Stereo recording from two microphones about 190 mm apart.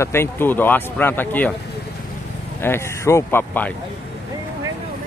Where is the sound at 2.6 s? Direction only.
15° left (ahead or behind).